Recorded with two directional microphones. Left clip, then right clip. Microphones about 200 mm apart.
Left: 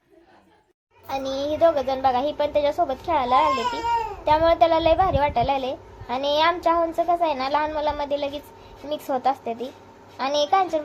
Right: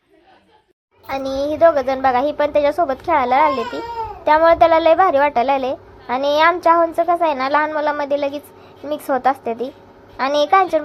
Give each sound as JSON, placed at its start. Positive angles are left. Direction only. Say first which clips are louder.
{"t": 1.0, "sound": "a child's voice", "louder": "right 5 dB", "side_deg": -20}